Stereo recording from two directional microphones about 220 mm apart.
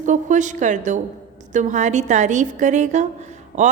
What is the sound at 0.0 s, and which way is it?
A woman's voice, 35° right (ahead or behind).